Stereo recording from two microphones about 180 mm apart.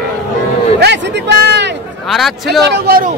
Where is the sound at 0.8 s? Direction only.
65° right (ahead or behind).